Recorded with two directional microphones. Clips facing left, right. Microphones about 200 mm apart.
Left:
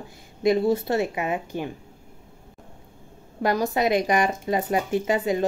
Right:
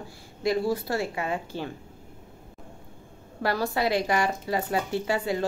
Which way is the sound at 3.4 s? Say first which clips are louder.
Left 4 dB; 20° left (ahead or behind).